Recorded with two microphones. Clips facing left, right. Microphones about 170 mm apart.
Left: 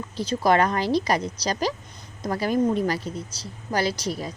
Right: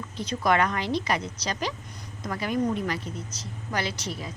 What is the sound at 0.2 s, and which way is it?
A woman's voice, 35° left (ahead or behind).